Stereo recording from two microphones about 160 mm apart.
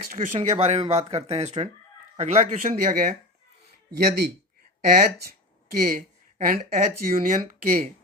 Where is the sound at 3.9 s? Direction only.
90° right.